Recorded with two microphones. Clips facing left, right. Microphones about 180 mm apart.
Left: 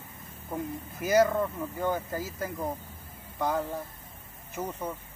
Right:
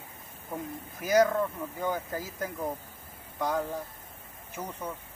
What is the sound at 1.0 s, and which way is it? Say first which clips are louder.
Speech: even; 5° left (ahead or behind).